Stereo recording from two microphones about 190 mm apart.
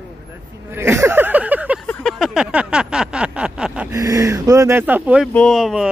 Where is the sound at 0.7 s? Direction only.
15° right (ahead or behind).